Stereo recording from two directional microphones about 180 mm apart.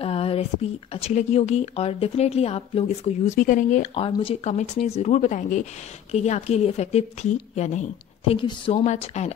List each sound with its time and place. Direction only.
0.0 s speech: 30° left (ahead or behind)
3.9 s speech: 30° left (ahead or behind)
8.4 s a woman's voice: 30° left (ahead or behind)
8.8 s speech: 40° left (ahead or behind)